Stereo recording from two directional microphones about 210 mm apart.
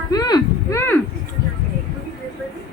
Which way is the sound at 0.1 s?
20° left (ahead or behind).